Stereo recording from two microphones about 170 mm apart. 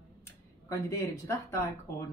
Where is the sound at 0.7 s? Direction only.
15° left (ahead or behind).